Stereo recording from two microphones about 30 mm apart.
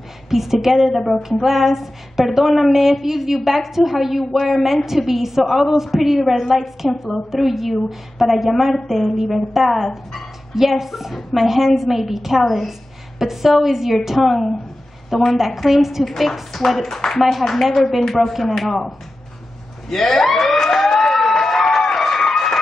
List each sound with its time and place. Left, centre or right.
0.3 s a woman's voice: centre
16.8 s speech: centre
17.2 s a woman's voice: centre
19.9 s a sound: centre